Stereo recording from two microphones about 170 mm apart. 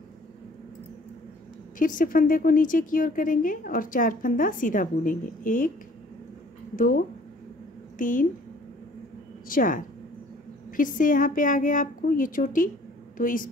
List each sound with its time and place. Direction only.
1.8 s speech: 55° left (ahead or behind)
8.0 s speech: 50° left (ahead or behind)
9.5 s a woman's voice: 55° left (ahead or behind)